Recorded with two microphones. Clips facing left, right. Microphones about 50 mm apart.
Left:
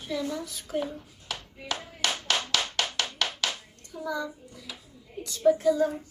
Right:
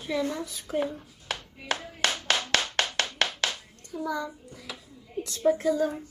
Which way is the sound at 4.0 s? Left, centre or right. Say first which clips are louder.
Right 1 dB; centre.